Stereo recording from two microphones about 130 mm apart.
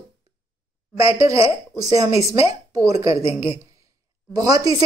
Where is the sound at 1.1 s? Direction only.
25° right (ahead or behind).